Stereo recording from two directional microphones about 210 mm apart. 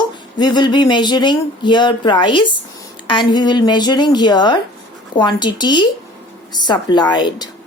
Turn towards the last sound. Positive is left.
turn(degrees=20)  # may be behind; listen again after turning